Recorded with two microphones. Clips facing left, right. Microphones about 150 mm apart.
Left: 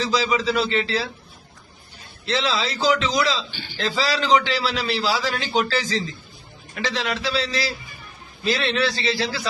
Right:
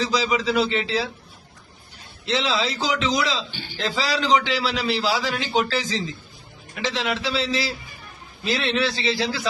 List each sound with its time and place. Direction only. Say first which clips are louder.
0.0 s speech: left 1 dB; 15° right (ahead or behind)
2.2 s a man's voice: even; 20° right (ahead or behind)